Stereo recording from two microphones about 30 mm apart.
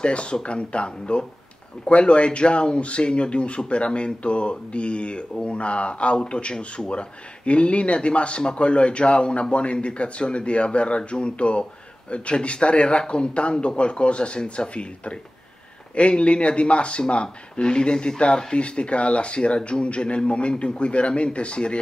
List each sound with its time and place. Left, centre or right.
0.0 s speech: left
18.5 s speech: left